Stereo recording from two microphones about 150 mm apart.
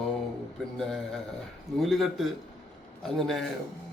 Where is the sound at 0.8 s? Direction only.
5° left (ahead or behind).